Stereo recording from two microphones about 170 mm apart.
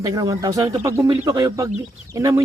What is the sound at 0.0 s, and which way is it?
Speech, 20° right (ahead or behind).